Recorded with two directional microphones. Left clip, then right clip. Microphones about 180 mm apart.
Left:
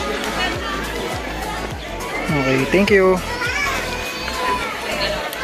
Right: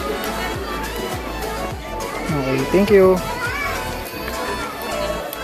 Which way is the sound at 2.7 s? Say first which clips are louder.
Right 2 dB; centre (ahead or behind).